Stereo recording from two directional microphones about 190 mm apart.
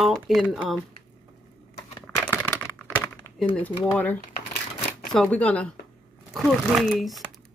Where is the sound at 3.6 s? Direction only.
10° left (ahead or behind).